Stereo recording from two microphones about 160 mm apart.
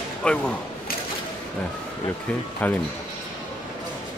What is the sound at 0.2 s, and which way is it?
Speech, 5° left (ahead or behind).